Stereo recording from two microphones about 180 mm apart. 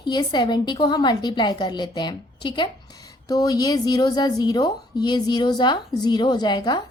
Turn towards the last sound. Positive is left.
turn(degrees=25)  # may be behind; listen again after turning